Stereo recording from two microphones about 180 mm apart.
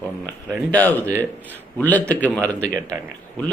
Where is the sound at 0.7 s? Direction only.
10° left (ahead or behind).